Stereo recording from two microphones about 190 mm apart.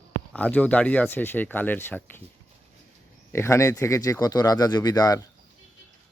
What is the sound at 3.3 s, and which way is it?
Speech, 15° left (ahead or behind).